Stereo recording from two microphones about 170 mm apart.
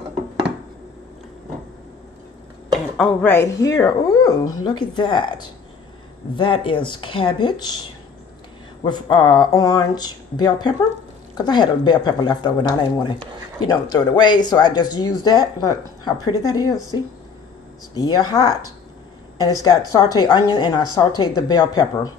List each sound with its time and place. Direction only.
3.0 s speech: 5° left (ahead or behind); by 5.3 s 25° left (ahead or behind)
6.3 s speech: 30° left (ahead or behind)
8.8 s speech: 25° left (ahead or behind)
17.9 s speech: 20° left (ahead or behind)